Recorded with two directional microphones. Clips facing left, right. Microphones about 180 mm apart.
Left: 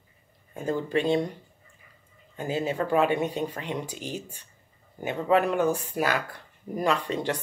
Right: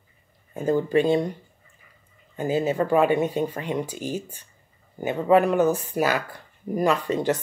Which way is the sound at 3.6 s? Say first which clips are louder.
Right 5 dB; 45° right (ahead or behind).